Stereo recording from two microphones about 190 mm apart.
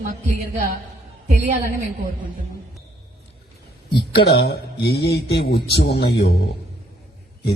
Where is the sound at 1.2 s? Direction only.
40° right (ahead or behind).